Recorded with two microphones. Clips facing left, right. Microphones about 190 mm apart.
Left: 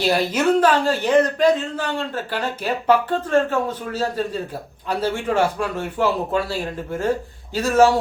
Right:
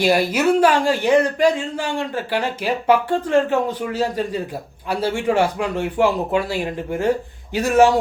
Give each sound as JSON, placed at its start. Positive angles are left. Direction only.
{"t": 0.0, "sound": "speech", "side_deg": -10}